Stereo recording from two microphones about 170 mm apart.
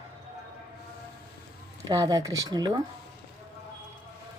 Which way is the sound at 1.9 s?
20° right (ahead or behind).